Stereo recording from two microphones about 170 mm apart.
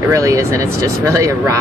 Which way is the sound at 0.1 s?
20° right (ahead or behind).